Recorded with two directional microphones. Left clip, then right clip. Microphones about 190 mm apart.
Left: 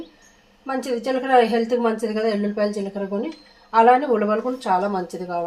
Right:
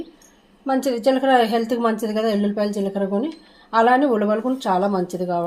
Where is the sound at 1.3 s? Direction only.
40° right (ahead or behind).